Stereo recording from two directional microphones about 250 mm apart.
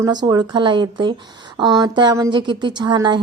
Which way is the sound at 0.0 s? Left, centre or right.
Centre.